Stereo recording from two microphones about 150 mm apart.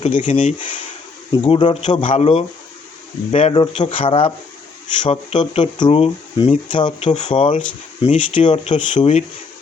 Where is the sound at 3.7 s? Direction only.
50° left (ahead or behind).